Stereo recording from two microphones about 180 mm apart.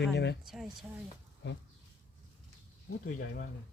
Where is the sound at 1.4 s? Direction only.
80° left.